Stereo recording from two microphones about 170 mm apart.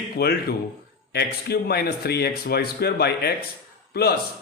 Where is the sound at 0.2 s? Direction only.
75° left (ahead or behind).